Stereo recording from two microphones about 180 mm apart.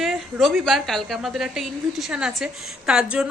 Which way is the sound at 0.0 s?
Centre (ahead or behind).